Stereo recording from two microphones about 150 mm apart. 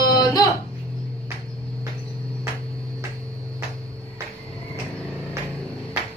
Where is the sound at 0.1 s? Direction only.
25° left (ahead or behind).